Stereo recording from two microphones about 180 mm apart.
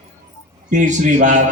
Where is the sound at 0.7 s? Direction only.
40° right (ahead or behind).